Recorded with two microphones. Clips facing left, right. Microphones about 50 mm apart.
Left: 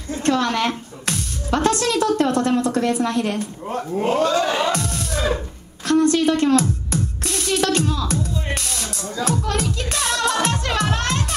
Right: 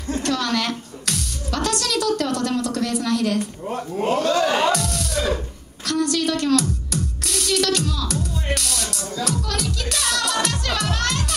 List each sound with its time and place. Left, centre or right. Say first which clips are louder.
0.2 s a woman's voice: left 5 dB; left
4.2 s music: right 1 dB; left